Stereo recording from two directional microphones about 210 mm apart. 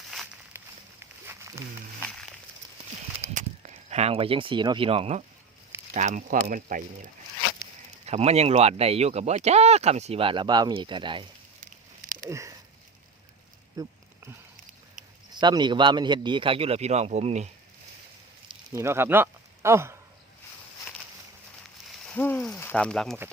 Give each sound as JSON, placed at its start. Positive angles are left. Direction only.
{"t": 0.5, "sound": "a sound", "side_deg": -10}
{"t": 3.3, "sound": "speech", "side_deg": -35}
{"t": 8.0, "sound": "speech", "side_deg": -30}
{"t": 11.6, "sound": "a sound", "side_deg": -40}
{"t": 12.3, "sound": "speech", "side_deg": -15}
{"t": 13.7, "sound": "a sound", "side_deg": -15}
{"t": 15.4, "sound": "a man's voice", "side_deg": -20}
{"t": 18.4, "sound": "speech", "side_deg": -15}
{"t": 22.1, "sound": "speech", "side_deg": 10}